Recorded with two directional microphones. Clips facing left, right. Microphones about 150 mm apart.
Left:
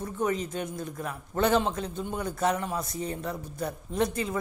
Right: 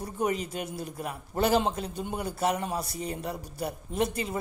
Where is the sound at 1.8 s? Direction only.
10° right (ahead or behind).